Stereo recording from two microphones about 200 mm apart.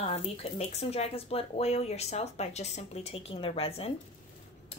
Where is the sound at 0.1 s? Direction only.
30° left (ahead or behind).